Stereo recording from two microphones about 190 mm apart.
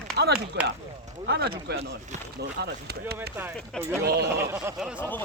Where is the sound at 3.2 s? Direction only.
10° right (ahead or behind).